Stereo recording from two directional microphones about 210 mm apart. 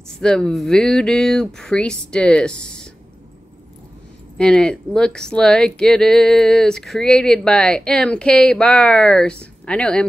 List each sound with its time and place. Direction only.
0.1 s speech: centre (ahead or behind)
4.4 s speech: 5° left (ahead or behind)